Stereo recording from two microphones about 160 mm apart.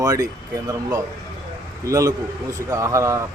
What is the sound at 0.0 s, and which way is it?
Speech, 20° right (ahead or behind).